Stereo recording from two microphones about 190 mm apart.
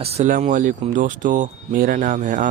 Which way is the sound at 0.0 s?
35° right (ahead or behind).